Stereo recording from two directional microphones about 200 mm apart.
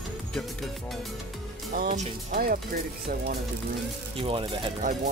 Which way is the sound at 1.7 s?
45° right (ahead or behind).